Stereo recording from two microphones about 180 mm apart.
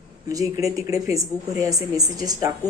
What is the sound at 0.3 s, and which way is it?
A woman's voice, 20° right (ahead or behind).